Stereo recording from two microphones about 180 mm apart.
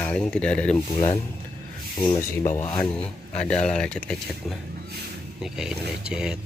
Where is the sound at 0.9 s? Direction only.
30° left (ahead or behind).